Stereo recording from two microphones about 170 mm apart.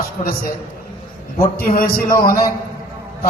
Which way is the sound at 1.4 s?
60° left (ahead or behind).